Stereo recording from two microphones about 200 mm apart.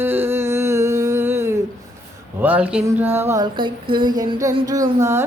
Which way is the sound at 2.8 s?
10° right (ahead or behind).